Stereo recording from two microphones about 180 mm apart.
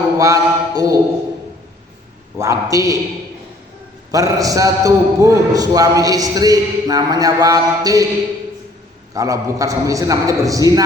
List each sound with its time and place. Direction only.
0.2 s a sound: 20° right (ahead or behind)
2.4 s a man's voice: 15° right (ahead or behind)
4.1 s a man's voice: 20° right (ahead or behind)
9.1 s a man's voice: 20° right (ahead or behind)